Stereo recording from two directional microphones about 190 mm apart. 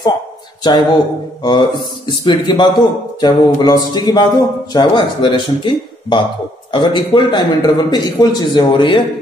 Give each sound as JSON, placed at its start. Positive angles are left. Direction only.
{"t": 0.7, "sound": "a man's voice", "side_deg": 20}